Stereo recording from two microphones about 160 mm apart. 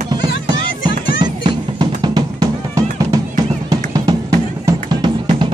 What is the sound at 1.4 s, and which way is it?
Music, 25° right (ahead or behind).